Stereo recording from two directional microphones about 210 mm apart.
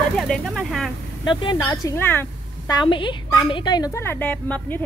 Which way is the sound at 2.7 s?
25° left (ahead or behind).